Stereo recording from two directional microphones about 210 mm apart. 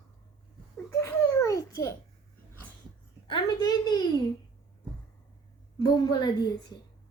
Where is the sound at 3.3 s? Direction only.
20° left (ahead or behind).